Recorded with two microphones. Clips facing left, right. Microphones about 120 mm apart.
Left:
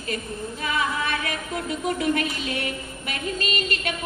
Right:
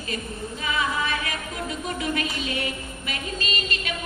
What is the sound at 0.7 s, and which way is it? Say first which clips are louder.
Music: even; 55° left (ahead or behind).